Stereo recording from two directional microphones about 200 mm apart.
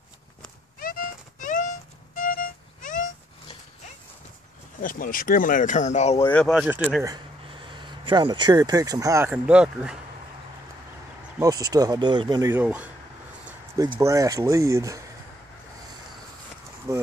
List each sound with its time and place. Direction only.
0.7 s clip-clop: 45° left (ahead or behind)
2.1 s music: 45° left (ahead or behind)
4.8 s speech: 45° left (ahead or behind)
6.3 s speech: centre (ahead or behind)
7.7 s speech: 25° right (ahead or behind); by 9.9 s 5° right (ahead or behind)
11.3 s speech: 20° right (ahead or behind)
13.7 s speech: 20° right (ahead or behind)
16.9 s speech: 15° right (ahead or behind)